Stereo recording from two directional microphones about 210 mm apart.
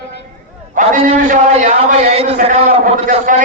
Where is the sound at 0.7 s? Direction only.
40° right (ahead or behind).